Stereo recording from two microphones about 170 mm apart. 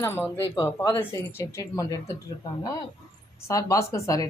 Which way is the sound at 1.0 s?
15° left (ahead or behind).